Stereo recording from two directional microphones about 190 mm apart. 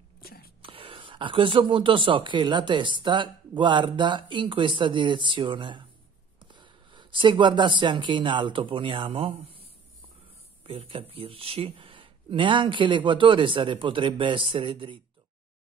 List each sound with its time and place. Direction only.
0.2 s a sound: 50° left (ahead or behind)
0.6 s speech: 30° right (ahead or behind)
10.6 s speech: 30° right (ahead or behind)